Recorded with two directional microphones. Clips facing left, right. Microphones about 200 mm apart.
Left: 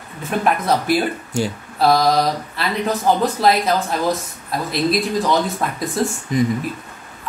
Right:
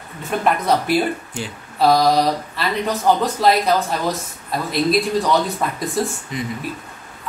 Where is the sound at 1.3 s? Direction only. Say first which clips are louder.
Left 8 dB; 40° left (ahead or behind).